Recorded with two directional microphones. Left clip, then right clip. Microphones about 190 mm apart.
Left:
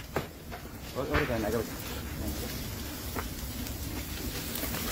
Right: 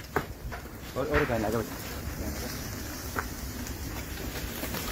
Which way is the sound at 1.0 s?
75° right (ahead or behind).